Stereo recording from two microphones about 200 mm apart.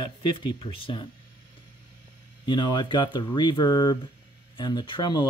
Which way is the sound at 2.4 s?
20° left (ahead or behind).